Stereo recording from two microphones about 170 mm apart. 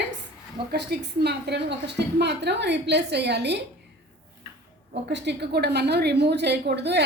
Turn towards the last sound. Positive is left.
turn(degrees=-80)